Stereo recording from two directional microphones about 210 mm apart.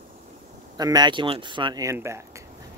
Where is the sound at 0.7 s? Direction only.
20° right (ahead or behind).